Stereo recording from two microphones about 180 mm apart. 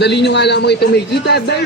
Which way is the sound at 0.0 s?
70° left (ahead or behind).